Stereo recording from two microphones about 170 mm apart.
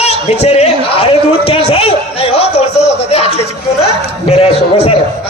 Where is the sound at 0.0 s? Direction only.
40° left (ahead or behind).